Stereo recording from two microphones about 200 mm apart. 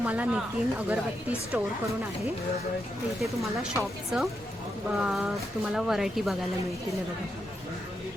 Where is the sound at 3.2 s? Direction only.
Centre (ahead or behind).